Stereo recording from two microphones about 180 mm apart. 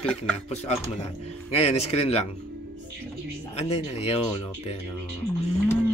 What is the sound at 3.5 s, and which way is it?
Speech, 35° left (ahead or behind).